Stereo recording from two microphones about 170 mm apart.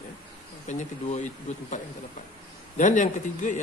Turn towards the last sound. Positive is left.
turn(degrees=45)  # may be behind; listen again after turning